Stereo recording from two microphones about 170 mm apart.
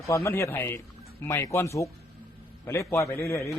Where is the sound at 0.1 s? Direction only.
15° left (ahead or behind).